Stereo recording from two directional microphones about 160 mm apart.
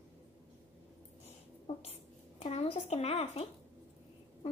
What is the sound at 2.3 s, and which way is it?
A woman's voice, 40° left (ahead or behind).